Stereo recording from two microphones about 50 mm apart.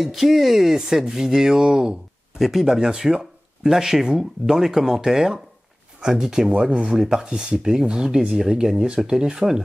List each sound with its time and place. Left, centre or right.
0.0 s speech: centre
2.3 s speech: centre
2.6 s speech: centre